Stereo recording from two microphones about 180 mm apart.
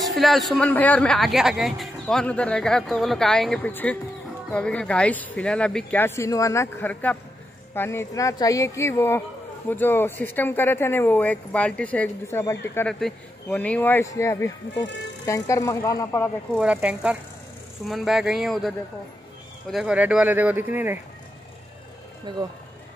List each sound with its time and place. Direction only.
0.0 s speech: centre (ahead or behind)
16.5 s speech: 5° right (ahead or behind)
22.3 s speech: 25° right (ahead or behind)